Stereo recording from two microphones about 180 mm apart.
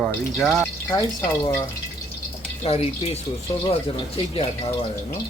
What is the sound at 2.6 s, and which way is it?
Speech, 35° left (ahead or behind).